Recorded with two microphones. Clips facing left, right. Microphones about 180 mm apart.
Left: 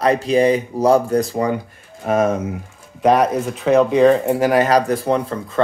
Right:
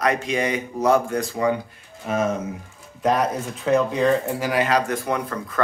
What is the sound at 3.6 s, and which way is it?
Speech, 70° left (ahead or behind).